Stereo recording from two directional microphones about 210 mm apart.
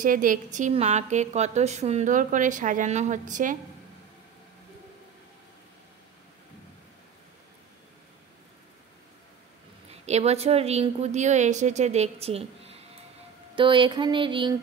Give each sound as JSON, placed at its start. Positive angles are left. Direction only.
{"t": 0.0, "sound": "a woman's voice", "side_deg": -40}
{"t": 9.8, "sound": "a woman's voice", "side_deg": -30}
{"t": 13.6, "sound": "a sound", "side_deg": -25}